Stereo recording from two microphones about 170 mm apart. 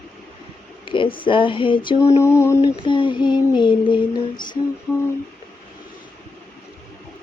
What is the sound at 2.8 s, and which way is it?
Speech, 30° left (ahead or behind).